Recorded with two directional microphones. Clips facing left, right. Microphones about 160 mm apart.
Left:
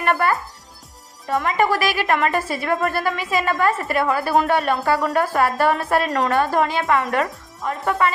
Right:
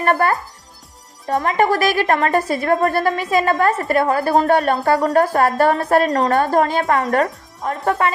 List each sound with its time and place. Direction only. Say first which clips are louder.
0.0 s music: right 3 dB; 40° right (ahead or behind)
1.3 s a woman's voice: right 3 dB; 40° right (ahead or behind)